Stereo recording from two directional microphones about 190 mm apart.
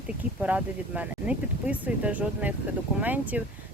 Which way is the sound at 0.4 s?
5° right (ahead or behind).